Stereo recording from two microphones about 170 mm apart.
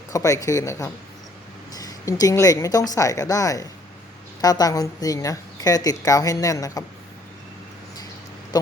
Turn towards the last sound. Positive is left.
turn(degrees=20)  # may be behind; listen again after turning